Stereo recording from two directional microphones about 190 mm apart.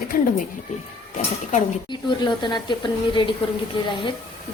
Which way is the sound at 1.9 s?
25° left (ahead or behind).